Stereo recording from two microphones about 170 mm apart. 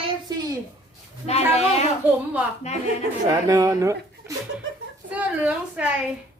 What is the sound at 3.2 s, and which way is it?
A woman's voice, 20° right (ahead or behind).